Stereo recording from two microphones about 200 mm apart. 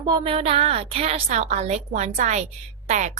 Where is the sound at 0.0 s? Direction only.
25° right (ahead or behind).